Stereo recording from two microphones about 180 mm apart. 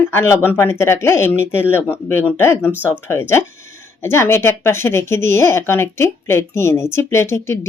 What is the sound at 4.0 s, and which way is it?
Speech, 15° left (ahead or behind).